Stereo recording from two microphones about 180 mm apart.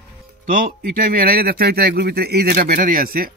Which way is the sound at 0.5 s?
50° right (ahead or behind).